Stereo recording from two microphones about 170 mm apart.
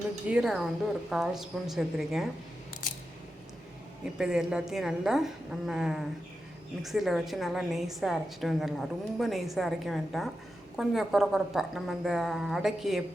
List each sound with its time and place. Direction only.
0.3 s a woman's voice: 5° right (ahead or behind)
4.2 s a woman's voice: 5° right (ahead or behind)